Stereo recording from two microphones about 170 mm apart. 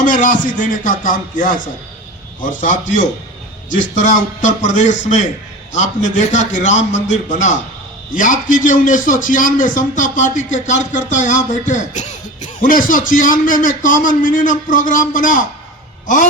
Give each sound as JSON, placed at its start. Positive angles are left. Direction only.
{"t": 0.0, "sound": "a man's voice", "side_deg": 50}